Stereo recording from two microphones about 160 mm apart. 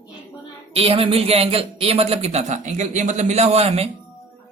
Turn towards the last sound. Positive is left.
turn(degrees=-40)  # may be behind; listen again after turning